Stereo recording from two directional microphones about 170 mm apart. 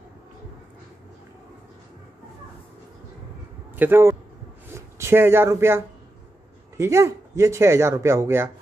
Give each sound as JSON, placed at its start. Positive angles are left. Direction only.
{"t": 3.7, "sound": "speech", "side_deg": -10}
{"t": 4.6, "sound": "a sound", "side_deg": -15}
{"t": 6.8, "sound": "speech", "side_deg": -15}